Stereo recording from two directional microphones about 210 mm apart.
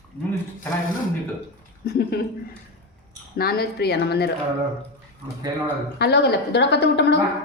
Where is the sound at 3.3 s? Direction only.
45° left (ahead or behind).